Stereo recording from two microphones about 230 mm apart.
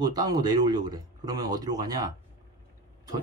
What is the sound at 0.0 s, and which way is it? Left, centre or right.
Speech, centre.